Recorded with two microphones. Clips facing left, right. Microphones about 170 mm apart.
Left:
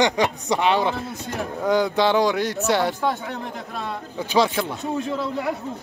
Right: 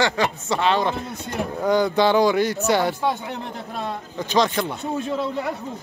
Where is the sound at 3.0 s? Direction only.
15° right (ahead or behind).